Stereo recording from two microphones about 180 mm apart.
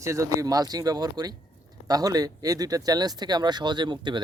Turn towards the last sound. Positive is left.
turn(degrees=-25)  # may be behind; listen again after turning